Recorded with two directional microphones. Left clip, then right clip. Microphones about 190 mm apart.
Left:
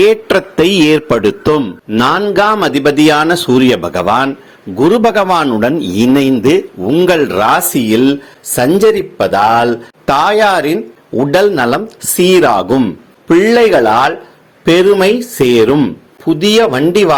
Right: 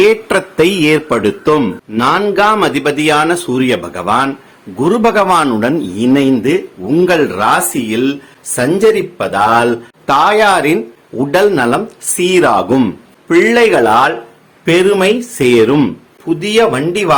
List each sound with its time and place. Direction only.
0.0 s speech: 35° left (ahead or behind)